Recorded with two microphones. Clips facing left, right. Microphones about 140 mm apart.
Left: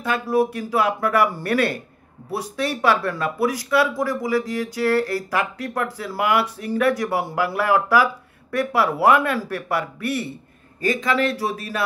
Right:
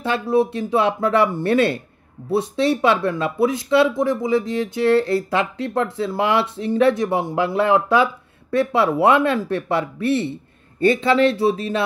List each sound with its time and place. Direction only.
0.0 s speech: 25° right (ahead or behind)